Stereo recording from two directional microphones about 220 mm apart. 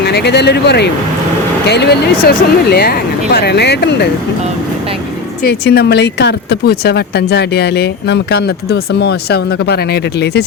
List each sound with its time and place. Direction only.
0.0 s speech: 50° left (ahead or behind)
5.4 s speech: 45° left (ahead or behind)